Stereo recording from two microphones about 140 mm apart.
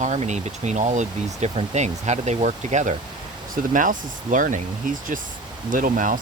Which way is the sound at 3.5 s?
75° right (ahead or behind).